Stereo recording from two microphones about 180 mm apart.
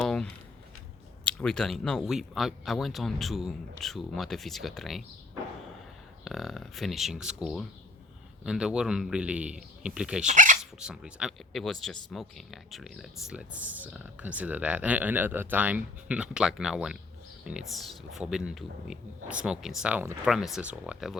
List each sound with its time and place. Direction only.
0.0 s a sound: 5° left (ahead or behind)
1.2 s speech: 5° left (ahead or behind)
6.2 s speech: centre (ahead or behind)
10.2 s dog: 45° right (ahead or behind)
10.6 s speech: 5° right (ahead or behind)